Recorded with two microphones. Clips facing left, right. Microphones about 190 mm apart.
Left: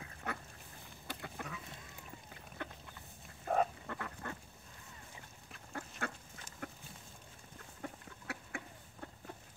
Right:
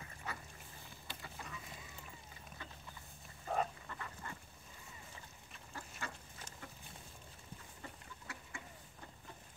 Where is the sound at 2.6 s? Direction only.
60° left (ahead or behind).